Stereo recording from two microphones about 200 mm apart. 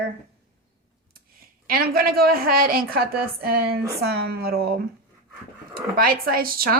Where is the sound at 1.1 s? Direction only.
45° right (ahead or behind).